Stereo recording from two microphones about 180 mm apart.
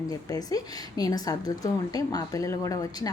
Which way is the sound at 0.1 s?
20° left (ahead or behind).